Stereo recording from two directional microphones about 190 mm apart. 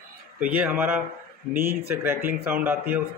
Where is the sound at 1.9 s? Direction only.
10° right (ahead or behind).